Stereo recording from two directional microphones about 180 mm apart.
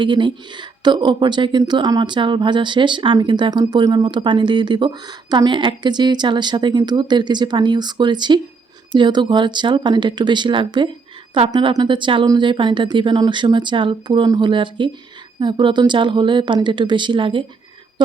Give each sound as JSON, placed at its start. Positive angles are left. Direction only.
{"t": 0.0, "sound": "speech", "side_deg": -25}